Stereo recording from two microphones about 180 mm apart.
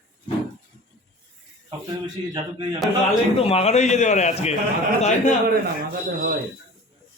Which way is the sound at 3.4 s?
35° left (ahead or behind).